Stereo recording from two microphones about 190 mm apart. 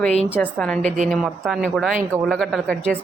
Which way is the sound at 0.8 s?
40° right (ahead or behind).